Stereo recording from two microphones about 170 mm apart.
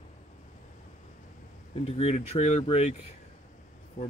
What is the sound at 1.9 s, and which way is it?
Speech, 40° left (ahead or behind).